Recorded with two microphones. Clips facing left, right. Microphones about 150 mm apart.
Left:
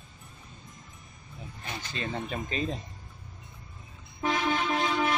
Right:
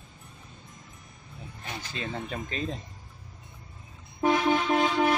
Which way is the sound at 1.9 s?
Centre (ahead or behind).